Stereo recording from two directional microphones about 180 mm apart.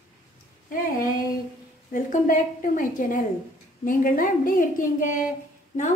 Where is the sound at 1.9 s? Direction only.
45° left (ahead or behind).